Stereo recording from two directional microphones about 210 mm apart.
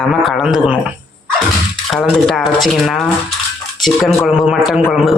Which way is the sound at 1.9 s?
Centre (ahead or behind).